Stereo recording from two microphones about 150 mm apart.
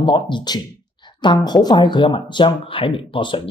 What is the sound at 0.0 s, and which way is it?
Speech, 30° left (ahead or behind).